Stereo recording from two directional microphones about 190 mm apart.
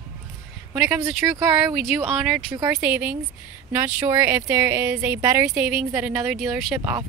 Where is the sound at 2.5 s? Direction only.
15° right (ahead or behind).